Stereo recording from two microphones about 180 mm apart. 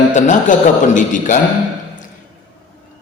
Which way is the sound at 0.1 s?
45° left (ahead or behind).